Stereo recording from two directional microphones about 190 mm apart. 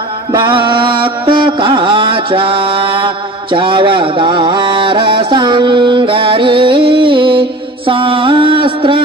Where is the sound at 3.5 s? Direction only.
25° right (ahead or behind).